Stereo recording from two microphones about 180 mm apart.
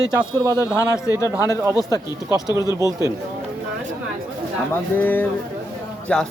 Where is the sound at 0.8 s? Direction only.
15° left (ahead or behind).